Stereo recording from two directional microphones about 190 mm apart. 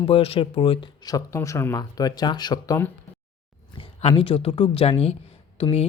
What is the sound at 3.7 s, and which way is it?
Speech, 30° left (ahead or behind).